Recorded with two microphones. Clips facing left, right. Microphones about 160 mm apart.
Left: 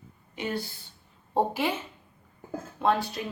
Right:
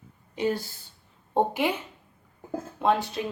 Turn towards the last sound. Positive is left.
turn(degrees=-20)  # may be behind; listen again after turning